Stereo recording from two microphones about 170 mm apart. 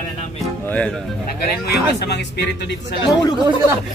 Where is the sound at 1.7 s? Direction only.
80° left.